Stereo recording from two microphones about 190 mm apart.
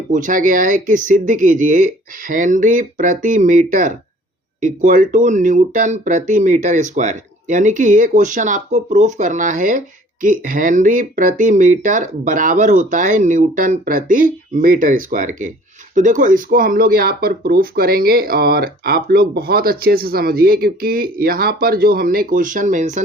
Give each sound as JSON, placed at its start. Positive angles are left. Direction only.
{"t": 0.1, "sound": "speech", "side_deg": -45}